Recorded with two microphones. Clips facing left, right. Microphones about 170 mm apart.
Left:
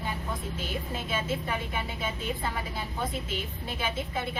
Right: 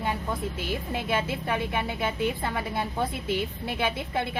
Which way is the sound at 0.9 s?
65° right (ahead or behind).